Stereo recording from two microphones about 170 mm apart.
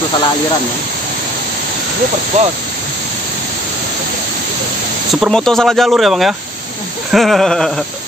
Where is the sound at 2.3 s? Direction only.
45° right (ahead or behind).